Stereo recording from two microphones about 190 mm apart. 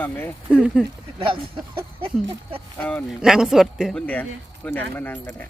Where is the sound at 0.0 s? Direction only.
10° left (ahead or behind).